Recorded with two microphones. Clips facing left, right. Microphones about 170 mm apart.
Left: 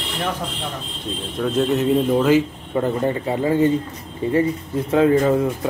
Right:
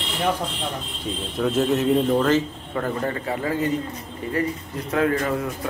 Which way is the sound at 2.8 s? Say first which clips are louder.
Left 5 dB; 20° left (ahead or behind).